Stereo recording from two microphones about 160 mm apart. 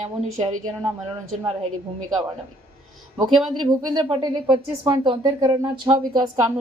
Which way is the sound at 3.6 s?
30° right (ahead or behind).